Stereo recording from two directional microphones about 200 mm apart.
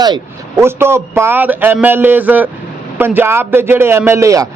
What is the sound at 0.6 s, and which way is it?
A man's voice, 10° right (ahead or behind).